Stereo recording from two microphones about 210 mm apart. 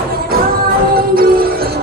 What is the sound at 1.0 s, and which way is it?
Music, 45° right (ahead or behind).